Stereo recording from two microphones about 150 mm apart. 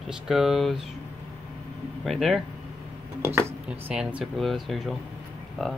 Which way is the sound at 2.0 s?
Centre (ahead or behind).